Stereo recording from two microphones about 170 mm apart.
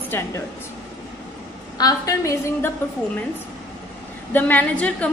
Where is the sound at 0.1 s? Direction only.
10° left (ahead or behind).